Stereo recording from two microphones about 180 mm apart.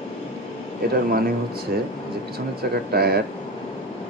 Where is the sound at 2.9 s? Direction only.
60° right (ahead or behind).